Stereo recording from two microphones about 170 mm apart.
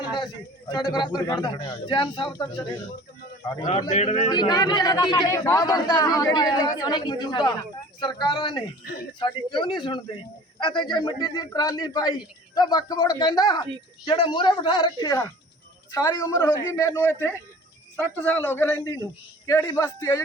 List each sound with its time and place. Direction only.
0.7 s a woman's voice: 25° left (ahead or behind)
3.8 s speech: 40° left (ahead or behind)
4.3 s a woman's voice: 25° left (ahead or behind)
18.8 s a woman's voice: 20° left (ahead or behind)